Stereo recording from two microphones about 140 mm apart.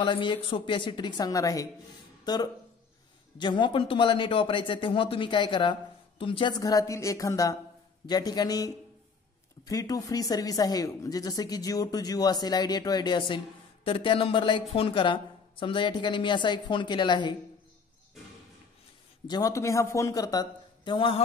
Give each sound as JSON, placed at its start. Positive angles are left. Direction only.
{"t": 0.0, "sound": "speech", "side_deg": 35}
{"t": 19.2, "sound": "speech", "side_deg": 25}